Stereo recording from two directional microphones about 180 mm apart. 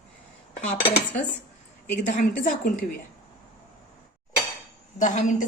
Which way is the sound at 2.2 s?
50° left (ahead or behind).